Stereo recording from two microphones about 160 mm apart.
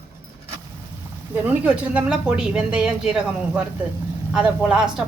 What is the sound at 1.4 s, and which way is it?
Speech, 10° right (ahead or behind).